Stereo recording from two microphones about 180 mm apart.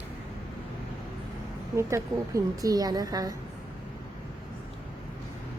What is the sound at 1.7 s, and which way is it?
A woman's voice, 15° right (ahead or behind).